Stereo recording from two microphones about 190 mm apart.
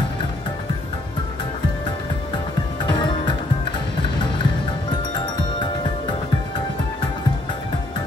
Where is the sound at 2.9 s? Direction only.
25° left (ahead or behind).